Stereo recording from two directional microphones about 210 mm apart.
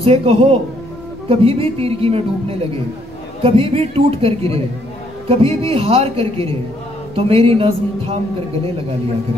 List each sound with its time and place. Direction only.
0.0 s a man's voice: 25° right (ahead or behind)